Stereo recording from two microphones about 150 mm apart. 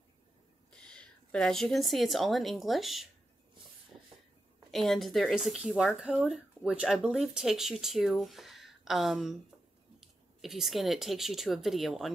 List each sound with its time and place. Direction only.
0.7 s a woman's voice: 5° left (ahead or behind)
4.6 s speech: centre (ahead or behind)